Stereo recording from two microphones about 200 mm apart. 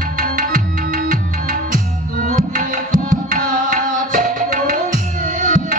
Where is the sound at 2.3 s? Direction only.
40° right (ahead or behind).